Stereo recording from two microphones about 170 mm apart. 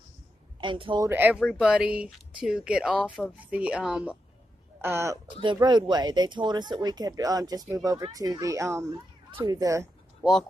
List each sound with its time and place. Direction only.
0.6 s speech: 30° right (ahead or behind)
1.0 s speech: 10° right (ahead or behind)
5.4 s speech: 25° right (ahead or behind)